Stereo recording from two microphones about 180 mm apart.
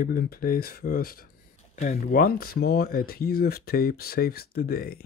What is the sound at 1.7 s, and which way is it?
Speech, 40° left (ahead or behind).